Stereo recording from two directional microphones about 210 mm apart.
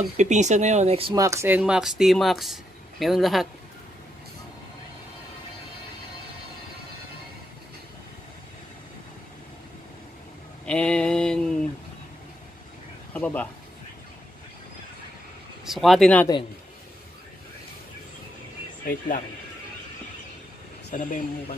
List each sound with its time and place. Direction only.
0.2 s speech: 35° right (ahead or behind); by 3.4 s centre (ahead or behind)
10.6 s speech: 5° left (ahead or behind)
13.1 s speech: 5° left (ahead or behind)
15.6 s speech: centre (ahead or behind)
18.9 s speech: 40° left (ahead or behind)
20.9 s speech: 40° left (ahead or behind)